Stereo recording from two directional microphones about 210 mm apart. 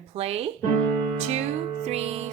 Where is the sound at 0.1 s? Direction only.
30° right (ahead or behind).